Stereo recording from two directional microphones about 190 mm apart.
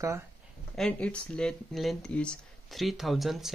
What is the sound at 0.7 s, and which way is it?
Speech, 5° left (ahead or behind).